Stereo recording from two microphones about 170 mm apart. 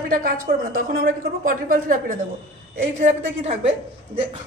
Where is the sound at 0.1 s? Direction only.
55° right (ahead or behind).